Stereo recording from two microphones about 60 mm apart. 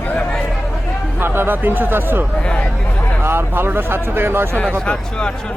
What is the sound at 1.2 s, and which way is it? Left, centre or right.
Speech, right.